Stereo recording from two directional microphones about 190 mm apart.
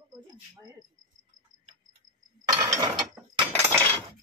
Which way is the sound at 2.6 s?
20° right (ahead or behind).